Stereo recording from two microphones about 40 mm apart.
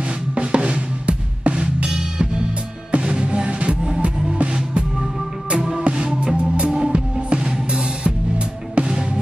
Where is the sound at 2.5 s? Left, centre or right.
Right.